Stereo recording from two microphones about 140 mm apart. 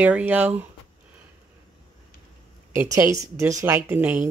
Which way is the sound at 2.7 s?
20° right (ahead or behind).